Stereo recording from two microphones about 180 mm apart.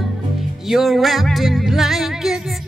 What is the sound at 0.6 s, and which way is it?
Music, centre (ahead or behind).